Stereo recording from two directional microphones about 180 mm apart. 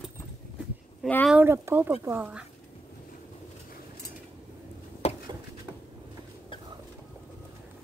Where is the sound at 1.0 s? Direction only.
5° left (ahead or behind).